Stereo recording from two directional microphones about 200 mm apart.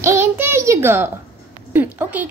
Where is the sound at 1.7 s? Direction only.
10° right (ahead or behind).